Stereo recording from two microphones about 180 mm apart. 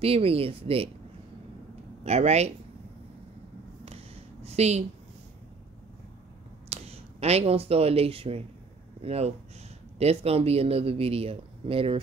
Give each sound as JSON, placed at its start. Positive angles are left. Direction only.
{"t": 0.0, "sound": "speech", "side_deg": -30}
{"t": 2.0, "sound": "speech", "side_deg": -35}
{"t": 3.8, "sound": "a sound", "side_deg": -35}
{"t": 6.7, "sound": "speech", "side_deg": -35}